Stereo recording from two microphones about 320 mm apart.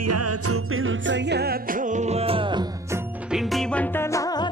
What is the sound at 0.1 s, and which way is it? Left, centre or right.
Music, right.